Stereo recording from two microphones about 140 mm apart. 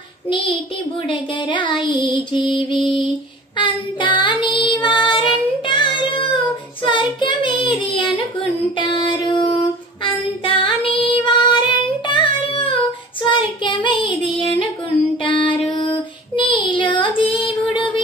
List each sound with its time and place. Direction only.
1.0 s mantra: 35° left (ahead or behind)
4.8 s child singing: 35° left (ahead or behind)
10.0 s female singing: 40° left (ahead or behind)
11.2 s child singing: 35° left (ahead or behind)
15.2 s music: 35° left (ahead or behind)
15.7 s female singing: 35° left (ahead or behind)
17.5 s music: 35° left (ahead or behind)